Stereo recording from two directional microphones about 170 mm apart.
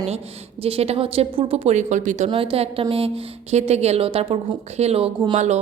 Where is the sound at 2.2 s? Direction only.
30° right (ahead or behind).